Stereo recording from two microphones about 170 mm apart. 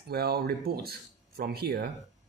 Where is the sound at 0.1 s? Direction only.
65° right (ahead or behind).